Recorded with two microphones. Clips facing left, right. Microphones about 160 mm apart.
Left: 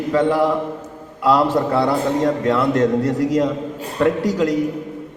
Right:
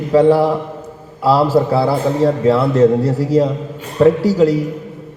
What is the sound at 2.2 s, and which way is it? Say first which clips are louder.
A man's voice: right 4 dB; 30° right (ahead or behind).